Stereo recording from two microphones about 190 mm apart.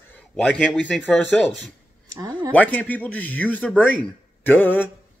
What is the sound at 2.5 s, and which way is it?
A man's voice, 10° left (ahead or behind).